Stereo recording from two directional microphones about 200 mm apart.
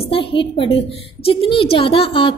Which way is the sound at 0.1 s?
25° left (ahead or behind).